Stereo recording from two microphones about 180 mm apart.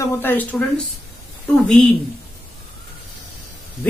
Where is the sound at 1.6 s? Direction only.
5° left (ahead or behind).